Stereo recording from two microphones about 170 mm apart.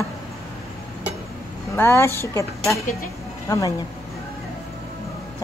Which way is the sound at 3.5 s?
20° left (ahead or behind).